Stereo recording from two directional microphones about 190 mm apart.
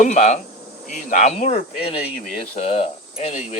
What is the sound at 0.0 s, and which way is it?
Speech, 40° left (ahead or behind).